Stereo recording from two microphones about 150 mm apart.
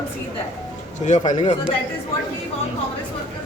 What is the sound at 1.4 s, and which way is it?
Speech, 35° left (ahead or behind).